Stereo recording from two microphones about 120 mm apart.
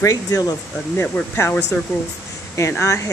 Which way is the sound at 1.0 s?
15° left (ahead or behind).